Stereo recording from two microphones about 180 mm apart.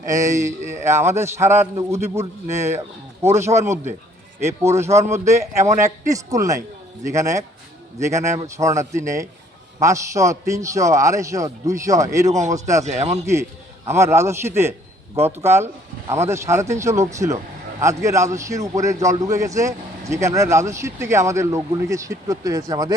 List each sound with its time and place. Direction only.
0.0 s a man's voice: 15° right (ahead or behind)
4.9 s a man's voice: 35° right (ahead or behind)
5.4 s a man's voice: 15° right (ahead or behind)
12.8 s a man's voice: 40° right (ahead or behind)
13.8 s a man's voice: 15° right (ahead or behind)